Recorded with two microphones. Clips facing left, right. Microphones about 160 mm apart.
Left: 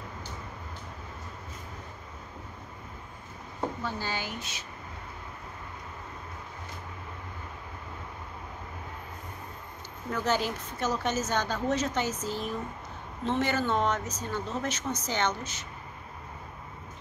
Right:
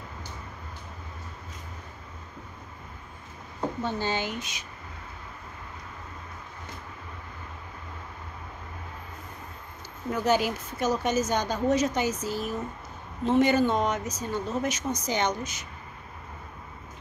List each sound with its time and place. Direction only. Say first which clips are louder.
3.8 s speech: right 5 dB; 20° right (ahead or behind)
10.1 s a woman's voice: right 4 dB; 10° right (ahead or behind)